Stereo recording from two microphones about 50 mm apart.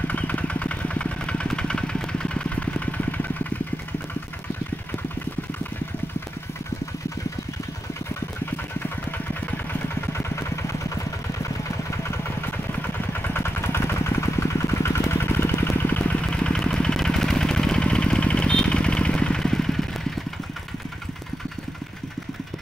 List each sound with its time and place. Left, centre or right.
0.1 s vehicle: left
10.1 s vehicle: left
12.0 s engine: left
12.7 s vehicle: left
13.4 s vehicle: left
16.3 s engine: centre
16.7 s vehicle: centre